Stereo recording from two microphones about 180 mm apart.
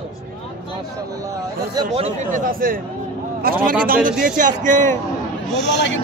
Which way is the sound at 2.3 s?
50° right (ahead or behind).